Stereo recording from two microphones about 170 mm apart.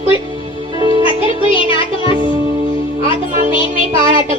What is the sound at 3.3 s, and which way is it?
Music, 50° right (ahead or behind).